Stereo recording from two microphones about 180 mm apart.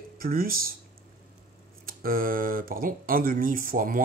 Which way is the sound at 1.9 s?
55° right (ahead or behind).